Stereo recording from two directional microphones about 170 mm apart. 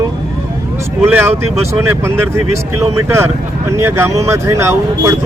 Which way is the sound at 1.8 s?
15° right (ahead or behind).